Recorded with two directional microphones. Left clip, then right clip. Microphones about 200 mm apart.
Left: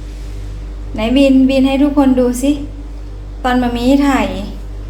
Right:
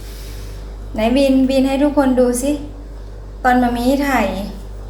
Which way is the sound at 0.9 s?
10° left (ahead or behind).